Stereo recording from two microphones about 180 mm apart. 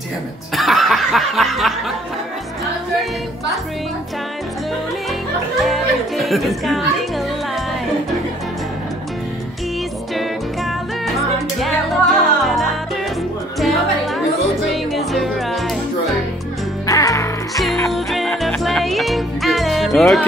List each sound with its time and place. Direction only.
0.6 s snicker: centre (ahead or behind)
5.6 s music: centre (ahead or behind)
10.1 s music: centre (ahead or behind)
16.8 s music: 20° left (ahead or behind)
17.6 s music: centre (ahead or behind)